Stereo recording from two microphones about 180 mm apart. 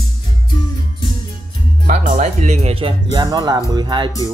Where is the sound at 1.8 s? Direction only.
45° right (ahead or behind).